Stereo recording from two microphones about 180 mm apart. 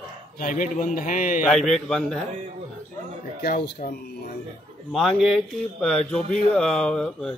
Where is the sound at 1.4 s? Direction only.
5° left (ahead or behind).